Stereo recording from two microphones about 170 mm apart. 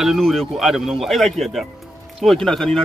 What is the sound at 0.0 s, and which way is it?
Speech, centre (ahead or behind).